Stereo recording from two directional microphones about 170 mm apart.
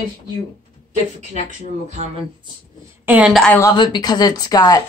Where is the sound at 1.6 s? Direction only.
45° right (ahead or behind).